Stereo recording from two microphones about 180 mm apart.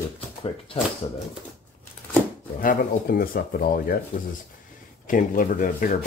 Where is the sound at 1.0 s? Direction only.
30° left (ahead or behind).